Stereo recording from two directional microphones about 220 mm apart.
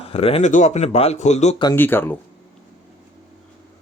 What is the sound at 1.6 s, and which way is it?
Speech, 10° left (ahead or behind).